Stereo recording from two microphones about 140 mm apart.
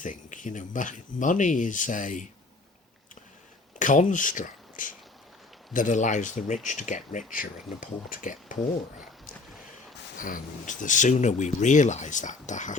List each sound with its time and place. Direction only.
0.0 s speech: 65° left (ahead or behind)
3.8 s speech: 65° left (ahead or behind)
10.2 s speech: 70° left (ahead or behind)